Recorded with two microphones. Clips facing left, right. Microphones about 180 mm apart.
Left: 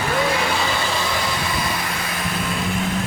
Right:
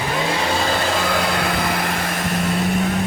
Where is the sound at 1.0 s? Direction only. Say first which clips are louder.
Right 4 dB; 60° right (ahead or behind).